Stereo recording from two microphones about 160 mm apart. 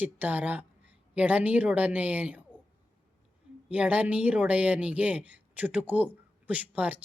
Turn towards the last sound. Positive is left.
turn(degrees=-10)  # may be behind; listen again after turning